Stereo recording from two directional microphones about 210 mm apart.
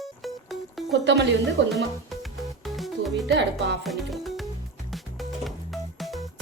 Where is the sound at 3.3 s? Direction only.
55° right (ahead or behind).